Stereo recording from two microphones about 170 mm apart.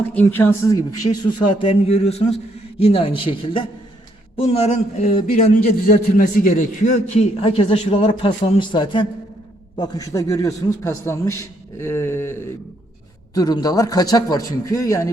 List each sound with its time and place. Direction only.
0.1 s a man's voice: 10° left (ahead or behind)
1.7 s a man's voice: 35° left (ahead or behind)
5.0 s a man's voice: 55° left (ahead or behind); by 10.5 s 20° left (ahead or behind)
10.8 s a sound: 15° left (ahead or behind)
13.3 s a man's voice: 20° left (ahead or behind)